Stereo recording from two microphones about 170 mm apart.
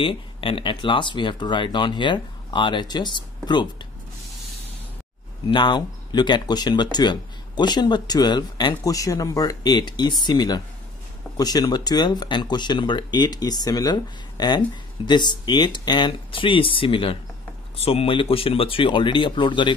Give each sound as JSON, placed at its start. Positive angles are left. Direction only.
{"t": 0.0, "sound": "speech", "side_deg": 30}
{"t": 5.5, "sound": "speech", "side_deg": 25}